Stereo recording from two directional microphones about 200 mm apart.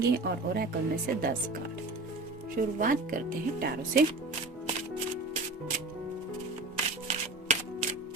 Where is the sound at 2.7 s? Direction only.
40° right (ahead or behind).